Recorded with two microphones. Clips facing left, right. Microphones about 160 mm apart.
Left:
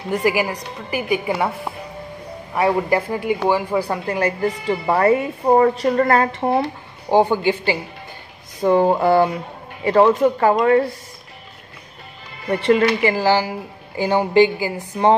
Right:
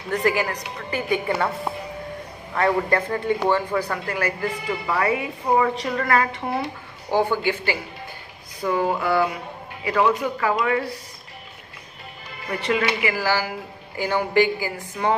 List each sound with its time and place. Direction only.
0.1 s a woman's voice: 10° left (ahead or behind)
2.5 s a woman's voice: 10° left (ahead or behind)
4.9 s speech: 40° left (ahead or behind)
7.1 s a woman's voice: 15° left (ahead or behind)
8.6 s speech: 35° left (ahead or behind)
12.6 s speech: 35° left (ahead or behind)
13.1 s a woman's voice: 20° left (ahead or behind)